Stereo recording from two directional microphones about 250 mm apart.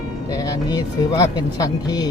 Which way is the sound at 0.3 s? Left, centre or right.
Centre.